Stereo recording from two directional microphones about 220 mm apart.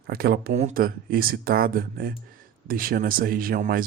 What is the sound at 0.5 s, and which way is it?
Speech, 35° right (ahead or behind).